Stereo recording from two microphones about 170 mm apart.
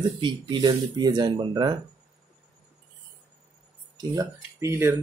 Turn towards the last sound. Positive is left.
turn(degrees=-15)  # may be behind; listen again after turning